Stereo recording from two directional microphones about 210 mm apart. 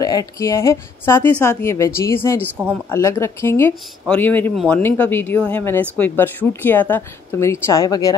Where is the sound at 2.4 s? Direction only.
10° right (ahead or behind).